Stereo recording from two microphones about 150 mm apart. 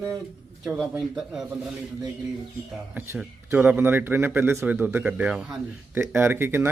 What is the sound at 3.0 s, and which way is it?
Speech, 15° right (ahead or behind).